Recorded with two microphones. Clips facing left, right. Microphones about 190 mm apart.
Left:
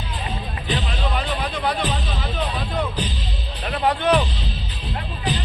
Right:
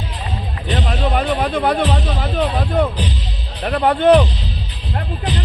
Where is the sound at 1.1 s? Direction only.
55° right (ahead or behind).